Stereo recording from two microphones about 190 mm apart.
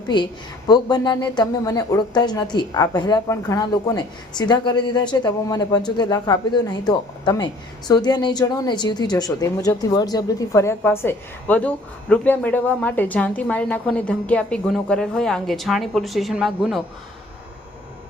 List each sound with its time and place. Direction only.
0.1 s speech: 25° left (ahead or behind); by 16.8 s 5° right (ahead or behind)